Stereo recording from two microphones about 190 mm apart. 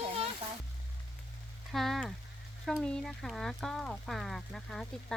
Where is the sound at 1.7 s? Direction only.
Centre (ahead or behind).